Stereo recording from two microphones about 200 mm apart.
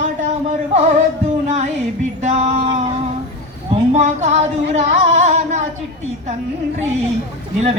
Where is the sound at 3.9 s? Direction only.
35° right (ahead or behind).